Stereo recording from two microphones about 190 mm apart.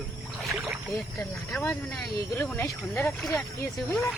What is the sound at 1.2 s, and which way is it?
Speech, 5° left (ahead or behind).